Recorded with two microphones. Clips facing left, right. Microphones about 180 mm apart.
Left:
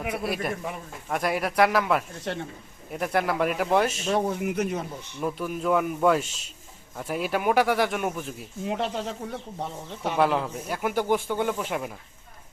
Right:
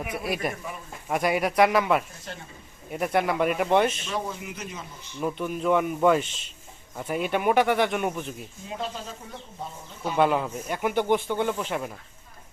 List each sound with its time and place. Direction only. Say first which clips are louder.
0.2 s a man's voice: left 1 dB; centre (ahead or behind)
2.3 s speech: left 9 dB; 70° left (ahead or behind)
2.9 s a man's voice: right 1 dB; centre (ahead or behind)
4.0 s speech: left 7 dB; 50° left (ahead or behind)
5.2 s a man's voice: right 1 dB; 5° left (ahead or behind)
8.6 s speech: left 6 dB; 75° left (ahead or behind)
10.2 s a man's voice: right 1 dB; centre (ahead or behind)